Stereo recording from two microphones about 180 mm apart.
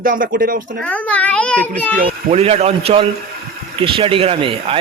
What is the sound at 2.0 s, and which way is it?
Speech, 35° right (ahead or behind).